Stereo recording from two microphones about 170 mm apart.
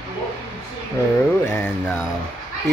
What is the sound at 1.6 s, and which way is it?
Speech, 10° left (ahead or behind).